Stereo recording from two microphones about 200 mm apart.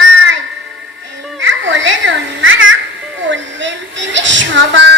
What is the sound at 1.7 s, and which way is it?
A child's voice, 65° right (ahead or behind).